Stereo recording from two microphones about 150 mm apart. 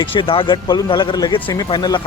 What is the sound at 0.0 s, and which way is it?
Speech, 35° left (ahead or behind).